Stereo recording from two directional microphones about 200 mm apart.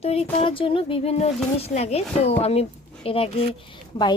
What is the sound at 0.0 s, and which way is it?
A woman's voice, 30° left (ahead or behind).